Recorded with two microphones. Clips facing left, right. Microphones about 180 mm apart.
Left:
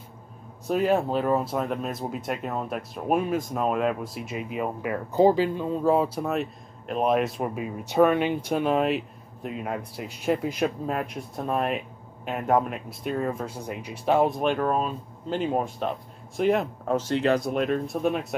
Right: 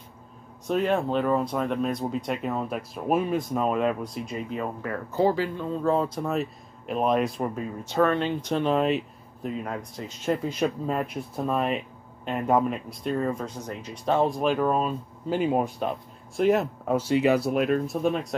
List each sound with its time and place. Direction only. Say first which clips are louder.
0.7 s speech: left 1 dB; 5° left (ahead or behind)